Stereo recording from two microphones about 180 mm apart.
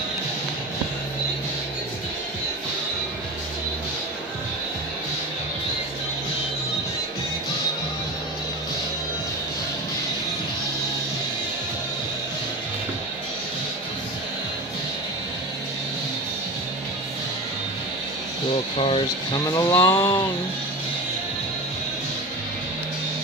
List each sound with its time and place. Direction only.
18.8 s speech: 30° left (ahead or behind)